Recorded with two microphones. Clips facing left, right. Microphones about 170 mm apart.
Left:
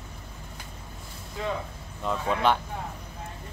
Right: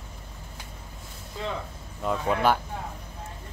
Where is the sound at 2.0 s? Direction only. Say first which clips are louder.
Right 1 dB; 5° right (ahead or behind).